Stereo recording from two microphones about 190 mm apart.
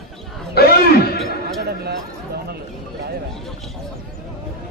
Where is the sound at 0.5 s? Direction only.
55° left (ahead or behind).